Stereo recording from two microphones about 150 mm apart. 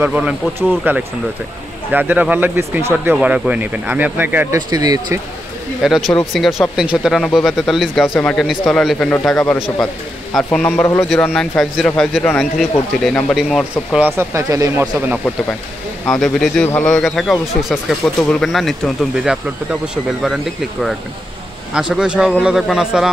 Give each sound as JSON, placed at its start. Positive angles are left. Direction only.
{"t": 0.0, "sound": "speech", "side_deg": -10}
{"t": 4.6, "sound": "speech", "side_deg": -25}
{"t": 5.8, "sound": "a man's voice", "side_deg": 0}
{"t": 14.0, "sound": "speech", "side_deg": -20}
{"t": 16.1, "sound": "a man's voice", "side_deg": 5}
{"t": 21.7, "sound": "a man's voice", "side_deg": -5}